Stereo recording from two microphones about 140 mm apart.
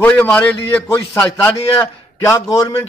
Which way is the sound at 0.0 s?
10° left (ahead or behind).